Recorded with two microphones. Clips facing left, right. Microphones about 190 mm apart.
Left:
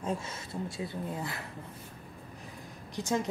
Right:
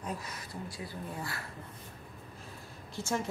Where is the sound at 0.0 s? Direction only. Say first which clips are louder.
Left 5 dB; 25° left (ahead or behind).